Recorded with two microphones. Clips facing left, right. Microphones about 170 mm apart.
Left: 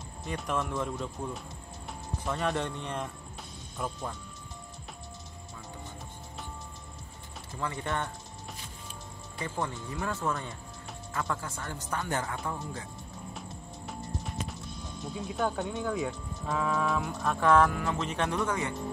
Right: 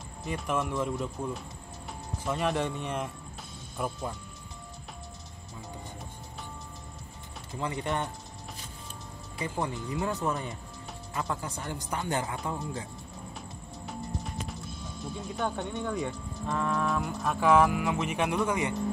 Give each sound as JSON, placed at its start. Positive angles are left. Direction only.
{"t": 0.2, "sound": "speech", "side_deg": -5}
{"t": 2.4, "sound": "speech", "side_deg": -5}
{"t": 7.5, "sound": "speech", "side_deg": -20}
{"t": 9.4, "sound": "speech", "side_deg": -15}
{"t": 13.3, "sound": "music", "side_deg": 0}
{"t": 15.1, "sound": "speech", "side_deg": 0}